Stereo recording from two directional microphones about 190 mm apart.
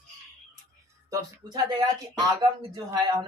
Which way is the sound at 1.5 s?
20° right (ahead or behind).